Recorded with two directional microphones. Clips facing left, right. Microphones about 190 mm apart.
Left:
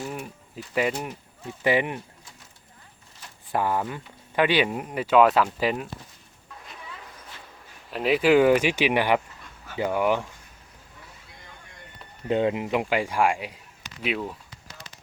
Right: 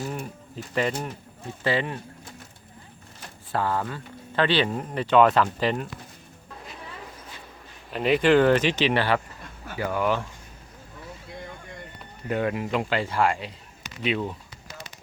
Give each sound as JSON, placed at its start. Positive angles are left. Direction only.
{"t": 0.0, "sound": "speech", "side_deg": 5}
{"t": 3.5, "sound": "speech", "side_deg": 15}
{"t": 7.9, "sound": "speech", "side_deg": 0}
{"t": 12.3, "sound": "speech", "side_deg": 20}